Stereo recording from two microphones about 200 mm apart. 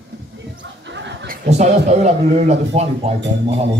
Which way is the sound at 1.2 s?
40° right (ahead or behind).